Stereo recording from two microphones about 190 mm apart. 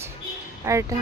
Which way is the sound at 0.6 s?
15° right (ahead or behind).